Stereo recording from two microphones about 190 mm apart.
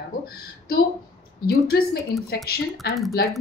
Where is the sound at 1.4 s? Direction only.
55° left (ahead or behind).